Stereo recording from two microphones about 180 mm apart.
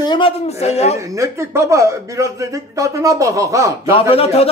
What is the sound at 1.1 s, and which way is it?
Speech, 15° right (ahead or behind).